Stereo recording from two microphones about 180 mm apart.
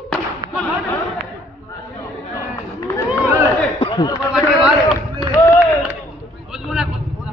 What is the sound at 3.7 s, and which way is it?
Chatter, 30° left (ahead or behind).